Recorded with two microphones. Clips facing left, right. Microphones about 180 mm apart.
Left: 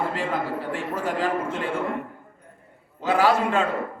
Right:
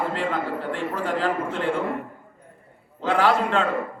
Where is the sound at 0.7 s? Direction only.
10° left (ahead or behind).